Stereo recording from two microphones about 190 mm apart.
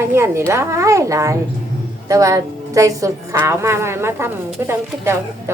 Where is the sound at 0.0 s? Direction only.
15° right (ahead or behind).